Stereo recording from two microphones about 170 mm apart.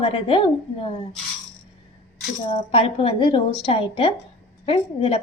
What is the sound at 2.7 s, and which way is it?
A woman's voice, 35° left (ahead or behind).